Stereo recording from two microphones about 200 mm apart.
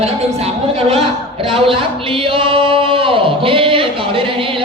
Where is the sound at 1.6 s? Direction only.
25° right (ahead or behind).